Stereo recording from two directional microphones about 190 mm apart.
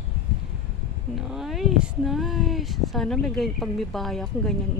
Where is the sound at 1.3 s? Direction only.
Centre (ahead or behind).